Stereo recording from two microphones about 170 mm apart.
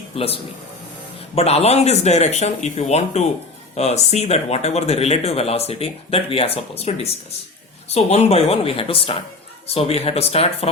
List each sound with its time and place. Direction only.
0.1 s speech: 35° left (ahead or behind)
1.4 s speech: 40° left (ahead or behind)